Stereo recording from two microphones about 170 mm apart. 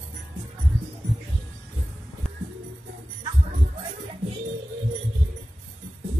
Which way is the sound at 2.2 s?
5° left (ahead or behind).